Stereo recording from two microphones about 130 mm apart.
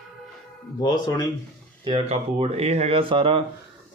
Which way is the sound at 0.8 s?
30° left (ahead or behind).